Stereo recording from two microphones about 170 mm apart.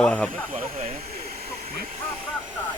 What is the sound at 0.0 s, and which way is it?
Speech, 5° left (ahead or behind).